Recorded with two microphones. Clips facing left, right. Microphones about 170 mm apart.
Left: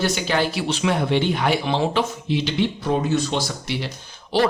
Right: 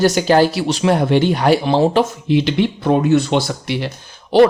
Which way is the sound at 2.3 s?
55° right (ahead or behind).